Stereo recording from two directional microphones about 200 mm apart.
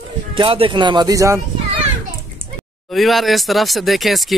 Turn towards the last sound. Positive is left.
turn(degrees=0)  # may be behind; listen again after turning